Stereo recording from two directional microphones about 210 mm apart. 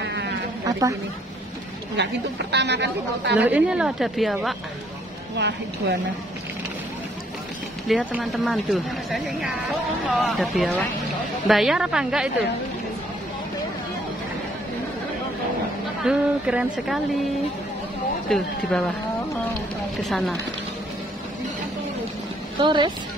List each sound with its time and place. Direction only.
0.0 s sheep: 55° right (ahead or behind)
0.7 s a sound: 15° right (ahead or behind)
2.0 s speech: 55° right (ahead or behind)
3.3 s speech: 10° right (ahead or behind)
5.3 s a woman's voice: 55° right (ahead or behind)
8.1 s speech: centre (ahead or behind)
16.0 s speech: 5° right (ahead or behind)
18.3 s speech: 5° left (ahead or behind)
20.0 s speech: centre (ahead or behind)
22.6 s a woman's voice: 20° right (ahead or behind)